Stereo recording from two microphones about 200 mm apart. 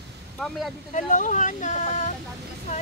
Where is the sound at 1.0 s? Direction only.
40° left (ahead or behind).